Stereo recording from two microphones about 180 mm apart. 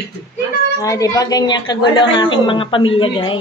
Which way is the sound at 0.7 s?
20° left (ahead or behind).